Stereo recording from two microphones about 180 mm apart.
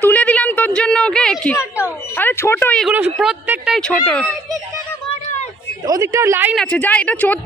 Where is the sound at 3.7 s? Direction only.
5° left (ahead or behind).